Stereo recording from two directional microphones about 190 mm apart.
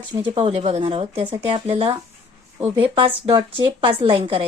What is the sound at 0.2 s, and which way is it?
Speech, 25° right (ahead or behind).